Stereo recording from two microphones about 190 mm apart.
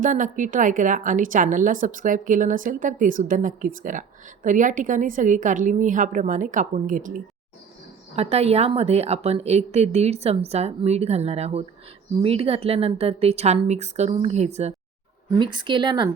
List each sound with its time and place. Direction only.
0.0 s a woman's voice: 45° right (ahead or behind)
8.1 s a woman's voice: 35° right (ahead or behind)
15.4 s a woman's voice: 25° right (ahead or behind)